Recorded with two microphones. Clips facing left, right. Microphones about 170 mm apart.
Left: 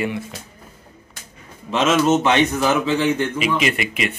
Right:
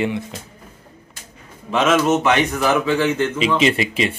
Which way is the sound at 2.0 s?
25° left (ahead or behind).